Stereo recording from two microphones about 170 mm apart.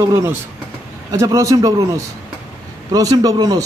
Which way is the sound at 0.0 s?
15° right (ahead or behind).